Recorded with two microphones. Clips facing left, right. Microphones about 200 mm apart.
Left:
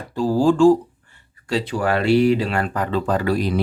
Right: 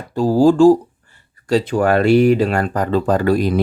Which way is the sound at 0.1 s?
45° right (ahead or behind).